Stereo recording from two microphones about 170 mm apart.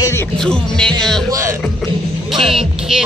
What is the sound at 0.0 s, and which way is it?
Music, 15° left (ahead or behind).